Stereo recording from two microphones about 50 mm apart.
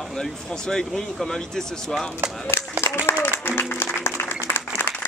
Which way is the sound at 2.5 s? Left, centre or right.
Left.